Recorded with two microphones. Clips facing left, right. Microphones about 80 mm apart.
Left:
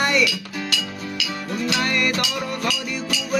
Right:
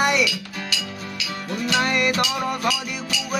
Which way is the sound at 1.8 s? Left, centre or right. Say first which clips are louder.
Right 4 dB; centre.